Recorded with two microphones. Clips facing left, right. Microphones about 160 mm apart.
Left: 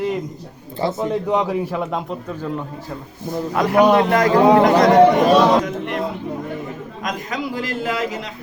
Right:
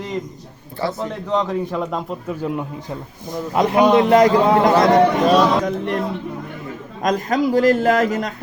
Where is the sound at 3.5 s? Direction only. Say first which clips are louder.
Even; 20° right (ahead or behind).